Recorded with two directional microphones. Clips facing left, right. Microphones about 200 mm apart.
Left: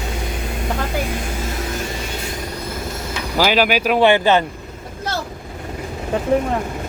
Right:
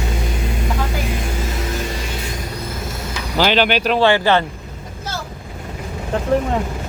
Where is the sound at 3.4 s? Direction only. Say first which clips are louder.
Even; 5° left (ahead or behind).